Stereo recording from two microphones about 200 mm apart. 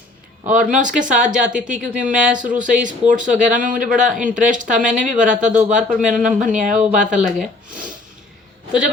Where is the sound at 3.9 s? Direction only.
5° right (ahead or behind).